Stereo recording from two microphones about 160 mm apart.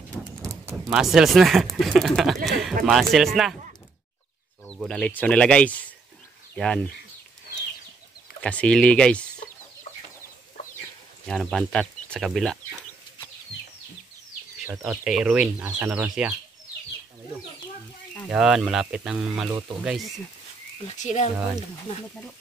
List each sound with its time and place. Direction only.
0.4 s a sound: 20° right (ahead or behind)
0.9 s speech: 5° right (ahead or behind)
4.8 s speech: 5° left (ahead or behind)
8.4 s speech: 10° left (ahead or behind)
11.2 s speech: centre (ahead or behind)
14.9 s speech: 5° right (ahead or behind)
18.3 s speech: 5° right (ahead or behind)
20.8 s speech: 45° left (ahead or behind)